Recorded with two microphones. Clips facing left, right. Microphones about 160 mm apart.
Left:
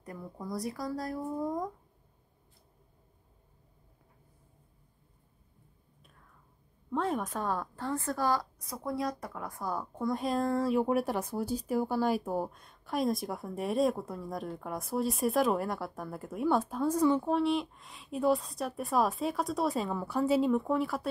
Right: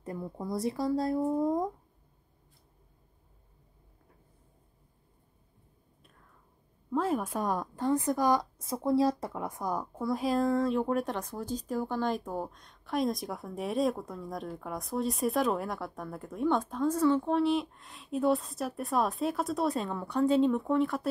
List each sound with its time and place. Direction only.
0.0 s speech: 25° right (ahead or behind)
6.9 s a woman's voice: 5° right (ahead or behind)
9.9 s speech: centre (ahead or behind)
17.3 s speech: centre (ahead or behind)